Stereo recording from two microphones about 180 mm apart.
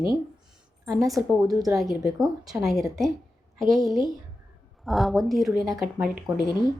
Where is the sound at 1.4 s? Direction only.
20° right (ahead or behind).